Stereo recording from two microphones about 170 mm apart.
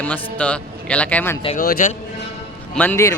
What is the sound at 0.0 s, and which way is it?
A man's voice, 10° left (ahead or behind).